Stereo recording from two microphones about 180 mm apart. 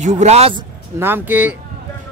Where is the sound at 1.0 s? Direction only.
10° right (ahead or behind).